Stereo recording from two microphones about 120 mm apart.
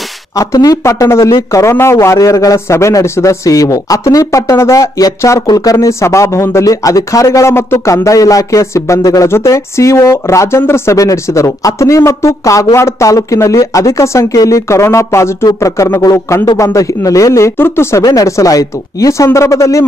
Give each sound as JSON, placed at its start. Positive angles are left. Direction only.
{"t": 0.4, "sound": "a man's voice", "side_deg": 30}